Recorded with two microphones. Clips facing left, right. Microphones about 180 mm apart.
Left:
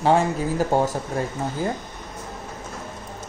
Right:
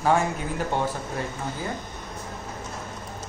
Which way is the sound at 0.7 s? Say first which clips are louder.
Left 5 dB; 40° left (ahead or behind).